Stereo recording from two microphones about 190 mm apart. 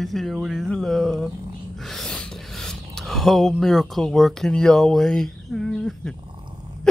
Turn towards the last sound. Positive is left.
turn(degrees=5)  # may be behind; listen again after turning